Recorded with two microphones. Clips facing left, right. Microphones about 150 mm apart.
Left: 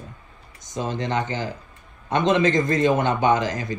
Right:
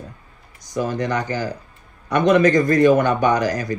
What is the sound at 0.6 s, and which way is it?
Speech, 20° left (ahead or behind).